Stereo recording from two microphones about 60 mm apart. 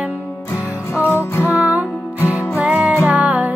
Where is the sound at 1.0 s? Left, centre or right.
Left.